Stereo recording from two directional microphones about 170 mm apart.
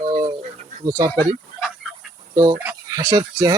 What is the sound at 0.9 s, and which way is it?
Speech, 20° right (ahead or behind).